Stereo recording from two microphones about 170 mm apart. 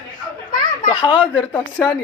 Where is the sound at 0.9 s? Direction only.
25° left (ahead or behind).